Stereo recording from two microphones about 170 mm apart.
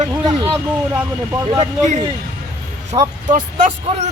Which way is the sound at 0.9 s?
15° right (ahead or behind).